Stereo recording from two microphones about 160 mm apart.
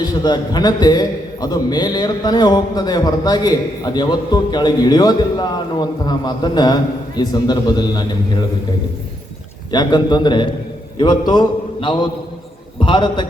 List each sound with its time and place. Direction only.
0.0 s a man's voice: 25° left (ahead or behind)
9.7 s a man's voice: 25° left (ahead or behind)